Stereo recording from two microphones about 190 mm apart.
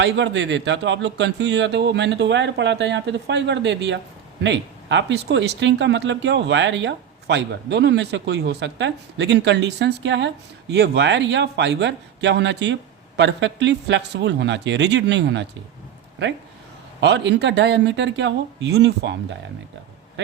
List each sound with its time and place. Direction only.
0.0 s speech: 70° right (ahead or behind)
17.0 s speech: 65° right (ahead or behind)